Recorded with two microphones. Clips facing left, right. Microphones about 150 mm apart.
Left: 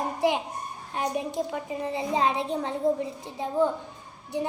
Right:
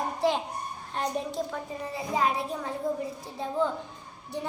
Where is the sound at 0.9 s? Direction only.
10° left (ahead or behind).